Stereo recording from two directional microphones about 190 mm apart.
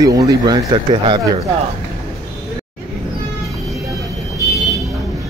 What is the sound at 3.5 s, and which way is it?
Vehicle, centre (ahead or behind).